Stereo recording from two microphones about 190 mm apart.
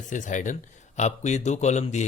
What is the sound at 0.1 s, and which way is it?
Speech, 40° left (ahead or behind).